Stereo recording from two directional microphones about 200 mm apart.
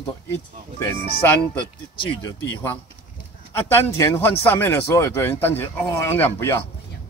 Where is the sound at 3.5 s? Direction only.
10° left (ahead or behind).